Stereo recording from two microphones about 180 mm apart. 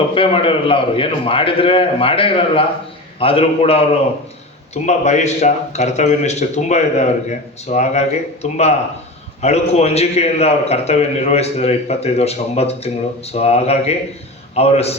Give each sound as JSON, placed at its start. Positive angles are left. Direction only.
{"t": 0.1, "sound": "a man's voice", "side_deg": 30}